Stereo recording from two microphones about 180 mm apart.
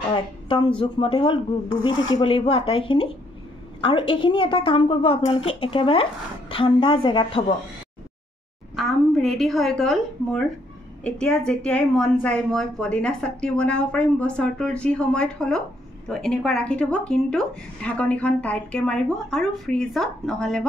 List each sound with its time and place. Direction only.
0.1 s a woman's voice: 25° left (ahead or behind)
8.7 s a woman's voice: centre (ahead or behind)